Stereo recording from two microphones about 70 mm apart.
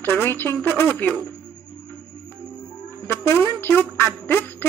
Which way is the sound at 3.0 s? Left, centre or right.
Left.